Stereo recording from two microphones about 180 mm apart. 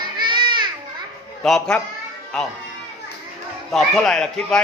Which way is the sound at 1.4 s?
5° left (ahead or behind).